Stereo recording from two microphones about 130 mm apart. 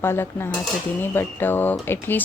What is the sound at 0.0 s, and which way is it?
Cutlery, 20° left (ahead or behind).